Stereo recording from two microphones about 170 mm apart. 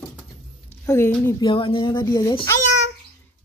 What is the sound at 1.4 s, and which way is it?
Speech, 30° left (ahead or behind).